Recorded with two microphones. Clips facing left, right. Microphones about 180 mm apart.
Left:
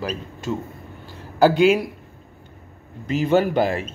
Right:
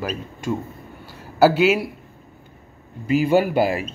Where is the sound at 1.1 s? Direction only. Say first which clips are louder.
Right 1 dB; 10° right (ahead or behind).